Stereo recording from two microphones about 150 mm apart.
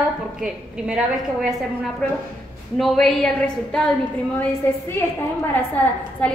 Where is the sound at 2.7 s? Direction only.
Centre (ahead or behind).